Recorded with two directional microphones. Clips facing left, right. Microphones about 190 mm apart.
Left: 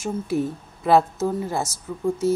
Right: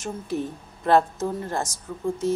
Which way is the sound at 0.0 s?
10° left (ahead or behind).